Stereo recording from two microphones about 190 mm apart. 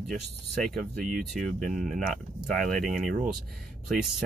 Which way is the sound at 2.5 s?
50° right (ahead or behind).